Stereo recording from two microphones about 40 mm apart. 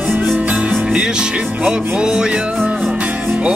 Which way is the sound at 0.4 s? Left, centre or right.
Right.